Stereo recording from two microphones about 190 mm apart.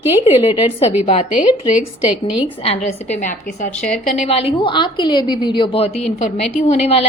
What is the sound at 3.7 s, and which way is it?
Speech, 5° left (ahead or behind).